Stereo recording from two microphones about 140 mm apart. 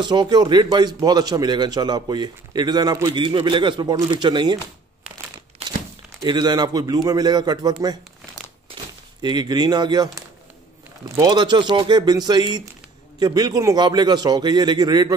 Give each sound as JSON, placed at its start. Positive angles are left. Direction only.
{"t": 0.0, "sound": "a man's voice", "side_deg": -30}
{"t": 6.2, "sound": "a man's voice", "side_deg": -30}
{"t": 9.2, "sound": "a man's voice", "side_deg": -30}
{"t": 11.1, "sound": "a man's voice", "side_deg": -25}